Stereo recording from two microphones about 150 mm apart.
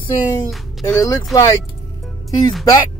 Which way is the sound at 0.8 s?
25° left (ahead or behind).